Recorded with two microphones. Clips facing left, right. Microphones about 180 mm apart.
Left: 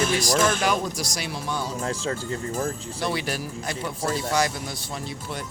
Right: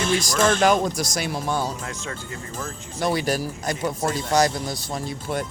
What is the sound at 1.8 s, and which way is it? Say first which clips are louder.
Speech: left 5 dB; 35° left (ahead or behind).